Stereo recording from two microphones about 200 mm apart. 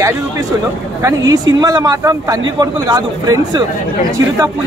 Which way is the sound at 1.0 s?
20° right (ahead or behind).